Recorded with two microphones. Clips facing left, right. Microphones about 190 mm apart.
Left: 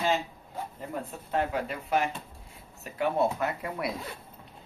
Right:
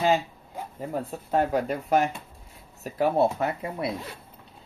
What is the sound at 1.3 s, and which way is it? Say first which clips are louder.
Speech: right 5 dB; 45° right (ahead or behind).